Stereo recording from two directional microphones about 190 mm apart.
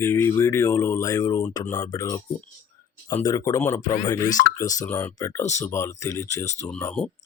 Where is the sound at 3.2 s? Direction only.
20° left (ahead or behind).